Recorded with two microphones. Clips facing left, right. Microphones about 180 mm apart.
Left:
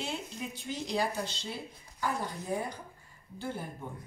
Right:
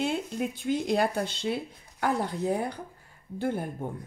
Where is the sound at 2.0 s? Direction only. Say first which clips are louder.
Right 7 dB; 70° right (ahead or behind).